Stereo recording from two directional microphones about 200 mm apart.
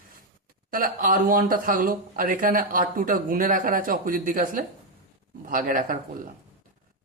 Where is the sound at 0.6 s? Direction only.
45° right (ahead or behind).